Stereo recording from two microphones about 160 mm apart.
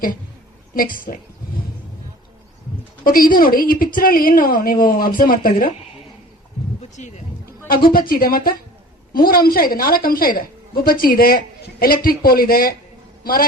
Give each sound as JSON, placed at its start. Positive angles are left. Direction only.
{"t": 0.7, "sound": "a woman's voice", "side_deg": 60}
{"t": 3.0, "sound": "a woman's voice", "side_deg": 60}
{"t": 7.0, "sound": "a sound", "side_deg": 50}
{"t": 7.7, "sound": "a woman's voice", "side_deg": 65}